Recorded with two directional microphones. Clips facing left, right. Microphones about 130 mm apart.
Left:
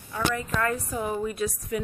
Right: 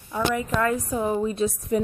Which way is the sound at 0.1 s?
15° right (ahead or behind).